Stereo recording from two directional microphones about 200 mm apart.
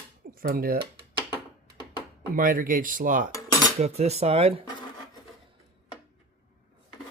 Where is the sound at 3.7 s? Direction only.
35° right (ahead or behind).